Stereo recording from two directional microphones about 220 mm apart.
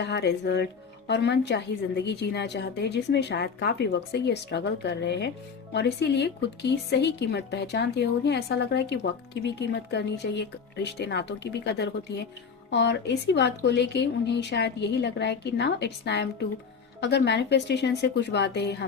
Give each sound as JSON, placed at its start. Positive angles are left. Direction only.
{"t": 0.0, "sound": "a woman's voice", "side_deg": 50}